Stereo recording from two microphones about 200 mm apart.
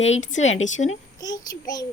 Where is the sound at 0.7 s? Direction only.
35° left (ahead or behind).